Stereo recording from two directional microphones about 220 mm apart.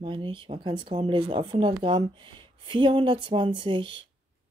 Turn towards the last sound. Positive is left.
turn(degrees=-20)  # may be behind; listen again after turning